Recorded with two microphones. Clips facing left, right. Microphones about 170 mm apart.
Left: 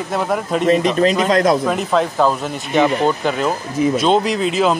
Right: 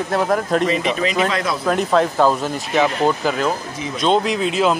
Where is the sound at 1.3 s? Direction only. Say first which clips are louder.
Left 8 dB; 45° left (ahead or behind).